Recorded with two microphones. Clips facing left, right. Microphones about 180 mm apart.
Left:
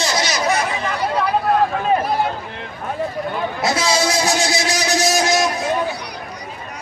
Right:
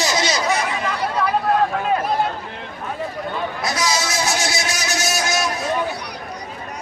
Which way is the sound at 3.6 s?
25° left (ahead or behind).